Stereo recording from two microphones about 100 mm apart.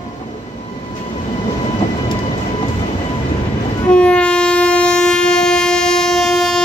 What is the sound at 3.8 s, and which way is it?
Train, 10° left (ahead or behind).